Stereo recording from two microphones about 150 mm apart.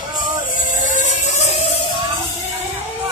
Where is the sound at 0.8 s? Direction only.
60° left (ahead or behind).